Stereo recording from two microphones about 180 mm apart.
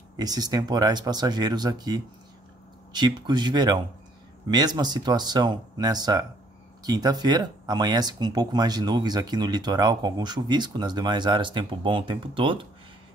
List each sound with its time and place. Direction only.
0.2 s speech: 20° right (ahead or behind)